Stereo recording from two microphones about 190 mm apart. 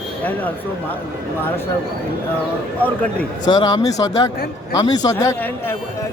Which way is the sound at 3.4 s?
20° left (ahead or behind).